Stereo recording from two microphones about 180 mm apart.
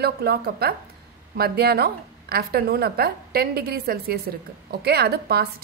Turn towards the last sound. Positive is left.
turn(degrees=-60)  # may be behind; listen again after turning